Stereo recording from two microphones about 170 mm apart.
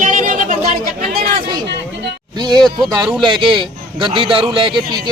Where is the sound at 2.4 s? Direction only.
25° right (ahead or behind).